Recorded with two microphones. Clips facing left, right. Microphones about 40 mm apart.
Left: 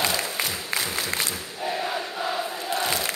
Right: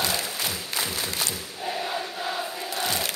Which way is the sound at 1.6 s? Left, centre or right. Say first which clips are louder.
Left 2 dB; centre.